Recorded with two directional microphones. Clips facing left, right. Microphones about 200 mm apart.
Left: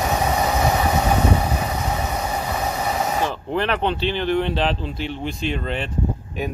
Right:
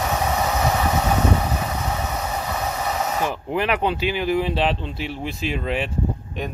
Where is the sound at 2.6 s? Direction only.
15° left (ahead or behind).